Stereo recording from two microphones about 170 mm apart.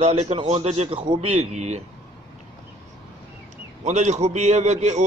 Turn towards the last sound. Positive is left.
turn(degrees=-40)  # may be behind; listen again after turning